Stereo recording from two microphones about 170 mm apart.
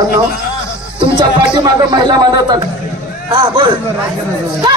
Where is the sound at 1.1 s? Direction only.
25° right (ahead or behind).